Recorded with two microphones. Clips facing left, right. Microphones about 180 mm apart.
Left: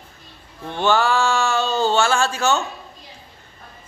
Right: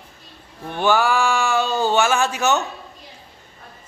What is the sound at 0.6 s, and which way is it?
Speech, 15° right (ahead or behind).